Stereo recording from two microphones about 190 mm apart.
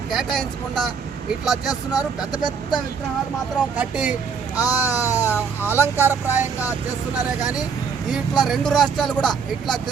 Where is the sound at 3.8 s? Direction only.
5° right (ahead or behind).